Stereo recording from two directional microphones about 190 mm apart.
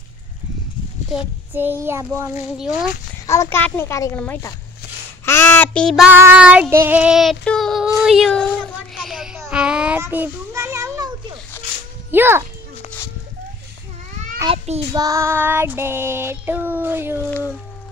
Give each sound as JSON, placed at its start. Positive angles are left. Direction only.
{"t": 1.5, "sound": "child singing", "side_deg": -10}
{"t": 2.5, "sound": "speech", "side_deg": -5}
{"t": 3.3, "sound": "a child's voice", "side_deg": 15}
{"t": 6.1, "sound": "child singing", "side_deg": -10}
{"t": 11.6, "sound": "music", "side_deg": 10}
{"t": 12.1, "sound": "child singing", "side_deg": -10}
{"t": 14.4, "sound": "a child's voice", "side_deg": -15}
{"t": 15.0, "sound": "child singing", "side_deg": -15}